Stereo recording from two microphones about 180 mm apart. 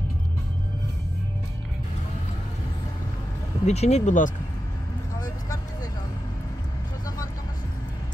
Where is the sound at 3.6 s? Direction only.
35° left (ahead or behind).